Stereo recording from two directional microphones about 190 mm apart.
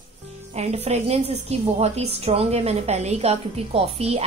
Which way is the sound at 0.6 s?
35° right (ahead or behind).